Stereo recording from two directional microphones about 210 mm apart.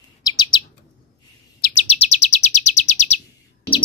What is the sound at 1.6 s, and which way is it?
Chirp, 30° left (ahead or behind).